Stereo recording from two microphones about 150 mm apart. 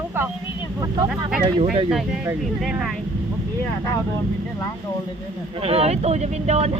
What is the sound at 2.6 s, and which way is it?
Speech, 5° right (ahead or behind).